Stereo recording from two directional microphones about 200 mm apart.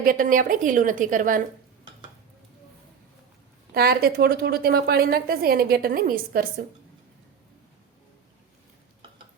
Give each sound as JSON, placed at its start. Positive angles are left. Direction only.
{"t": 0.0, "sound": "a woman's voice", "side_deg": -45}
{"t": 3.8, "sound": "a woman's voice", "side_deg": -50}